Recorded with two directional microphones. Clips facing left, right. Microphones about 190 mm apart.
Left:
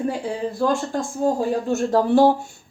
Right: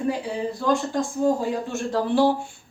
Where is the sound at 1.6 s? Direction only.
45° left (ahead or behind).